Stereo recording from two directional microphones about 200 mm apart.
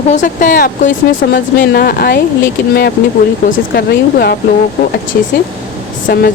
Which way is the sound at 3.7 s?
50° left (ahead or behind).